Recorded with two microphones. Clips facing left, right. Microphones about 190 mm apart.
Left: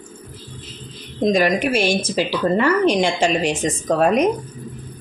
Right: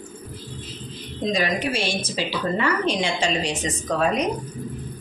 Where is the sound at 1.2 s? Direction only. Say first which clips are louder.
Left 7 dB; 45° left (ahead or behind).